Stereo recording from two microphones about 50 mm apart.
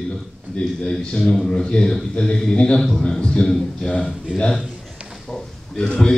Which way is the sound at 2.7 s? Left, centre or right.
Centre.